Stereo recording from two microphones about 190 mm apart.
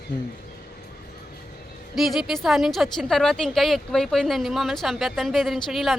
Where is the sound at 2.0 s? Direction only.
Centre (ahead or behind).